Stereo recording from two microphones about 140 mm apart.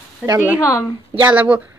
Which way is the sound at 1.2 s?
10° right (ahead or behind).